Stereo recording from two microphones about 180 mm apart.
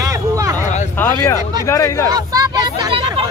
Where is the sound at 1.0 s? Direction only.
15° left (ahead or behind).